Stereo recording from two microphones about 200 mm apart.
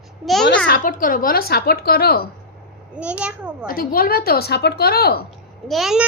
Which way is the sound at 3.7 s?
45° left (ahead or behind).